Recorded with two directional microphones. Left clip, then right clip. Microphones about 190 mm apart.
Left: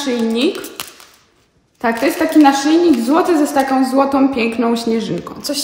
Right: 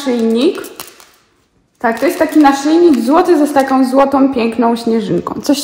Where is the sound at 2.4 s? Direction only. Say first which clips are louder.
Right 2 dB; 15° right (ahead or behind).